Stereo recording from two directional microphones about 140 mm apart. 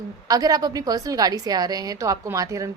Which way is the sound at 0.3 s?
25° right (ahead or behind).